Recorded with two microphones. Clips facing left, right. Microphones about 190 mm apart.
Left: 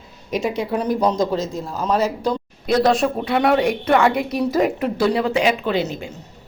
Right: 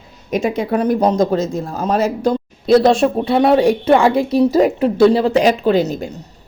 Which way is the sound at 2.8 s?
25° right (ahead or behind).